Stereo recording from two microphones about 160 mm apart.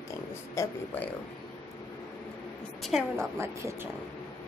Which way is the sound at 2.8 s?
Centre (ahead or behind).